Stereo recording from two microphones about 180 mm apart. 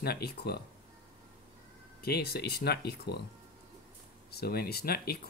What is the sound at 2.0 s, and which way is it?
Speech, 60° left (ahead or behind).